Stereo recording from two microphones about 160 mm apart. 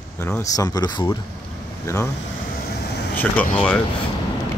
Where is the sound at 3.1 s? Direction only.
5° left (ahead or behind).